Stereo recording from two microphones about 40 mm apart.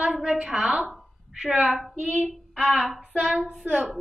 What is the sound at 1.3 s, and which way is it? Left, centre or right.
Speech, right.